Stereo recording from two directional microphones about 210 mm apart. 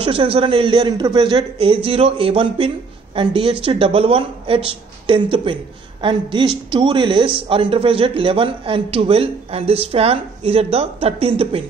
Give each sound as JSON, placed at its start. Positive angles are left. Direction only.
{"t": 0.0, "sound": "speech", "side_deg": -25}